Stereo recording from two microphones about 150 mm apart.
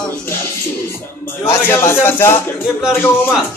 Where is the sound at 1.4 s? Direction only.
20° left (ahead or behind).